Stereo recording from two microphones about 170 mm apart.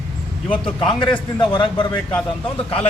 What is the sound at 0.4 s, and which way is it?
A man's voice, 30° left (ahead or behind).